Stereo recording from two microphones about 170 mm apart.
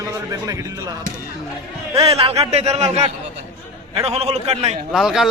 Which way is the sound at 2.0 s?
35° right (ahead or behind).